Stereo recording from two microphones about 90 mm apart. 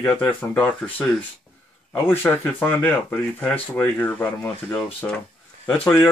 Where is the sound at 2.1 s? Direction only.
20° left (ahead or behind).